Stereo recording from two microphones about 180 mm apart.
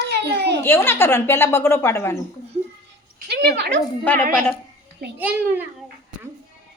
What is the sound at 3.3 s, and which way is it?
Speech, 65° right (ahead or behind).